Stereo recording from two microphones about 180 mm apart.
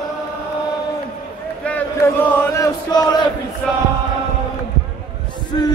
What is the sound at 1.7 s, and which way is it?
Chant, 10° left (ahead or behind).